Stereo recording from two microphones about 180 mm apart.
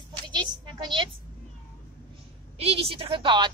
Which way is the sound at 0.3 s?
25° right (ahead or behind).